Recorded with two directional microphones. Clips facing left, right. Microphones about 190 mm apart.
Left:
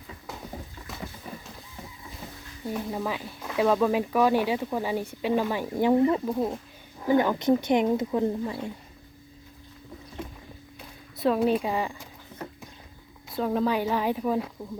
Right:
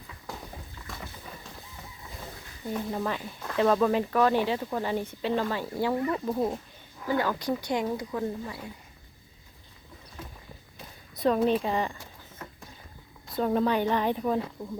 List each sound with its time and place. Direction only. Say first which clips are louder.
2.6 s speech: even; 5° left (ahead or behind); by 6.2 s 25° left (ahead or behind)
6.2 s speech: left 1 dB; centre (ahead or behind)
7.0 s speech: left 5 dB; 20° left (ahead or behind)
10.8 s a sound: even; centre (ahead or behind)
13.2 s speech: even; centre (ahead or behind)